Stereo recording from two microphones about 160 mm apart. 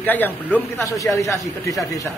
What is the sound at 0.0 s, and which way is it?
A man's voice, 10° left (ahead or behind).